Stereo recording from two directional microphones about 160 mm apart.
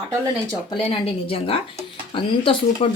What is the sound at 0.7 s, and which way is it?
A woman's voice, 35° left (ahead or behind).